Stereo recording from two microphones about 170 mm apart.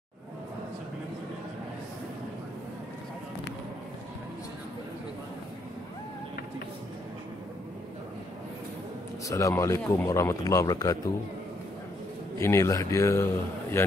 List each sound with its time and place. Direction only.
9.3 s a man's voice: 20° left (ahead or behind)
12.4 s a man's voice: 15° left (ahead or behind)